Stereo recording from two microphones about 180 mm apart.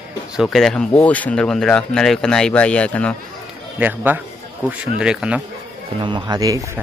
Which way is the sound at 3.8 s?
10° right (ahead or behind).